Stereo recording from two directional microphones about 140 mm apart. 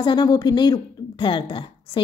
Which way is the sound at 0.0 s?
30° left (ahead or behind).